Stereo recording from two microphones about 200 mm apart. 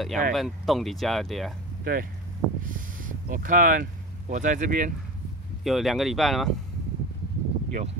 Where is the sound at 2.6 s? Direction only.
40° right (ahead or behind).